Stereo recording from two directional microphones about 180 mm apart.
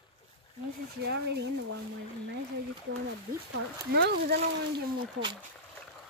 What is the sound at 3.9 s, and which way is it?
Speech, 65° right (ahead or behind).